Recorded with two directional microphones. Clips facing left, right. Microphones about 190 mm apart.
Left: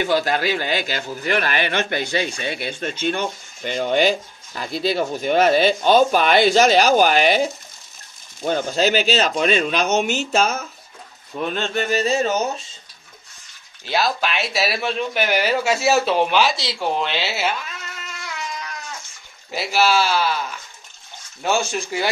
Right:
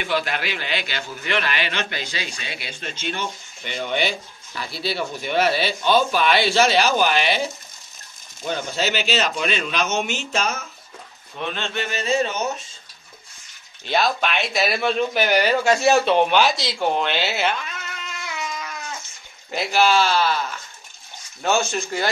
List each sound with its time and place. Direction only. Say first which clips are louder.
0.0 s a man's voice: left 5 dB; 40° left (ahead or behind)
8.5 s a man's voice: left 5 dB; 45° left (ahead or behind)
13.8 s speech: even; centre (ahead or behind)
19.5 s speech: even; 5° left (ahead or behind)
21.4 s speech: even; 10° left (ahead or behind)